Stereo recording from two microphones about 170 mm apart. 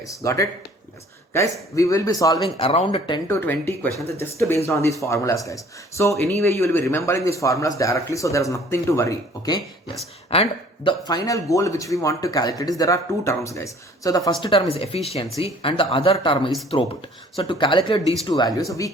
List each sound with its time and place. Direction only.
0.0 s speech: 20° left (ahead or behind)
2.6 s speech: 35° left (ahead or behind)
3.2 s speech: 15° left (ahead or behind)
10.2 s speech: 35° left (ahead or behind)
14.4 s speech: 35° left (ahead or behind)